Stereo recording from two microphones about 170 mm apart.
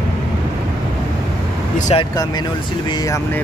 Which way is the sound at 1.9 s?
35° left (ahead or behind).